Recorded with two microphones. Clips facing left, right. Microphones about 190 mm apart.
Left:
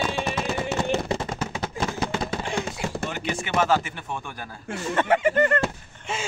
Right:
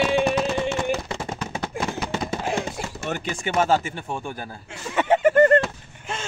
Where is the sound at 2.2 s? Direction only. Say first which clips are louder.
Right 2 dB; 5° right (ahead or behind).